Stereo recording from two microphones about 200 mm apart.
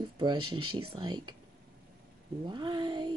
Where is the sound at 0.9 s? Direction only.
25° right (ahead or behind).